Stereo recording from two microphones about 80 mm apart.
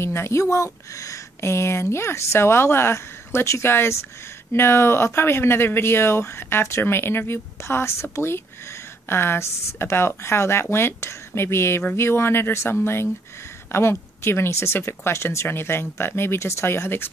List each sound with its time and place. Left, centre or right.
0.0 s speech: left